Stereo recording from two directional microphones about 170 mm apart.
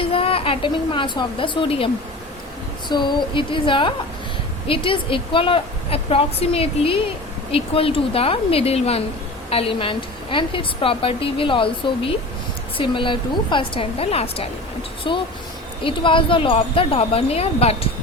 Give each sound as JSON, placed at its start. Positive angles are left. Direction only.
{"t": 0.0, "sound": "a woman's voice", "side_deg": 35}
{"t": 2.9, "sound": "a woman's voice", "side_deg": 25}